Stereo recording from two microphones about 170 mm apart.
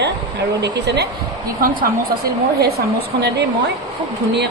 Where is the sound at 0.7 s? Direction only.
85° right.